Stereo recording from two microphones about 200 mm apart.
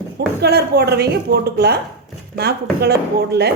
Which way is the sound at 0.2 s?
50° right (ahead or behind).